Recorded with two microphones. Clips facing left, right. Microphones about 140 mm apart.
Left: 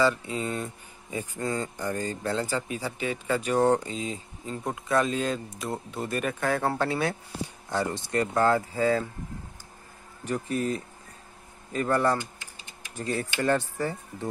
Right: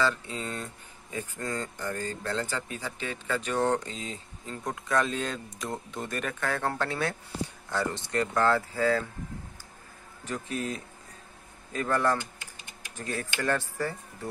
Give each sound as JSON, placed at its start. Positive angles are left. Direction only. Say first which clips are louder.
{"t": 0.0, "sound": "speech", "louder": "left 4 dB", "side_deg": 10}
{"t": 10.2, "sound": "speech", "louder": "left 5 dB", "side_deg": 10}